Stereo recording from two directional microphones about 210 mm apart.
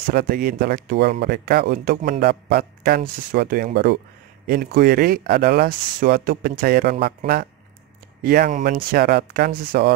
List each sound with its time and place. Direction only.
0.1 s speech: 45° right (ahead or behind)
8.2 s speech: 45° right (ahead or behind)